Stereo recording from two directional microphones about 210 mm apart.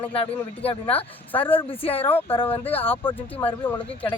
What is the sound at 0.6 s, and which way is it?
Speech, 30° left (ahead or behind).